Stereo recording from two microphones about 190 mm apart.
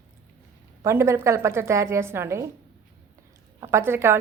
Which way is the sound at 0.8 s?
15° right (ahead or behind).